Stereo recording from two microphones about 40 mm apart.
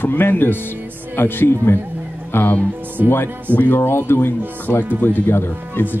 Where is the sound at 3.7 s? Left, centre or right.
Left.